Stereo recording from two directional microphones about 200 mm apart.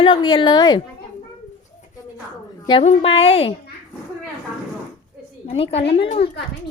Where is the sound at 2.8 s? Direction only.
30° left (ahead or behind).